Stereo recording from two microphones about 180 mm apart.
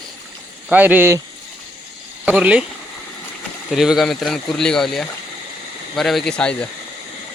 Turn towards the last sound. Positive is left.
turn(degrees=5)  # may be behind; listen again after turning